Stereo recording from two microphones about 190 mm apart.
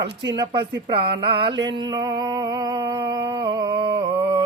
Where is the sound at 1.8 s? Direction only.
20° right (ahead or behind).